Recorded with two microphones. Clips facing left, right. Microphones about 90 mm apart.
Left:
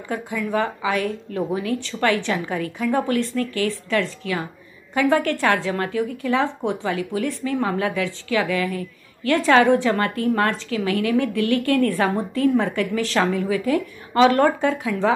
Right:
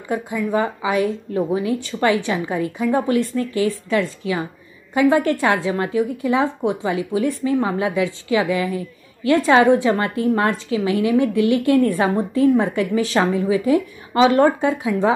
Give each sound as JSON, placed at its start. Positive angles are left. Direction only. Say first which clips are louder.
{"t": 0.1, "sound": "a woman's voice", "louder": "right 3 dB", "side_deg": -15}